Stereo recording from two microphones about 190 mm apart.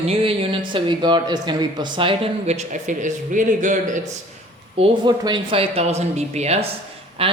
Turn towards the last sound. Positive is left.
turn(degrees=-30)  # may be behind; listen again after turning